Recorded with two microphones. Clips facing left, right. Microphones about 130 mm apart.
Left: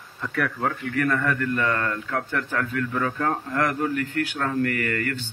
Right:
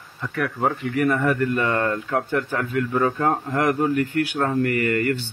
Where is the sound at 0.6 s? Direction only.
20° right (ahead or behind).